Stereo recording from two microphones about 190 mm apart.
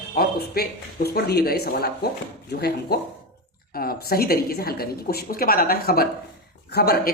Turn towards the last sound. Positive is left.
turn(degrees=55)  # may be behind; listen again after turning